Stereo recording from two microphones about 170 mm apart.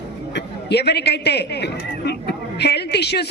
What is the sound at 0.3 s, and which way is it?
A man's voice, 75° left (ahead or behind).